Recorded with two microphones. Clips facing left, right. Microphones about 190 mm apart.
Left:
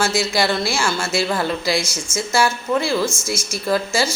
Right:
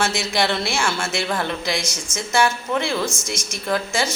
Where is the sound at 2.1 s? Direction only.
Centre (ahead or behind).